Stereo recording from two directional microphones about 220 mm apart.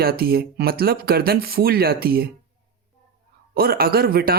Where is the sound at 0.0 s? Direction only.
45° right (ahead or behind).